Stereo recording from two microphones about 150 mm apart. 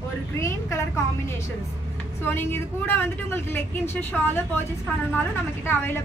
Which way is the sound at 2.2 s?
15° left (ahead or behind).